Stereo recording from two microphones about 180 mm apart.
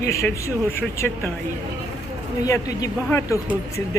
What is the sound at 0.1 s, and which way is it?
Speech, 15° left (ahead or behind).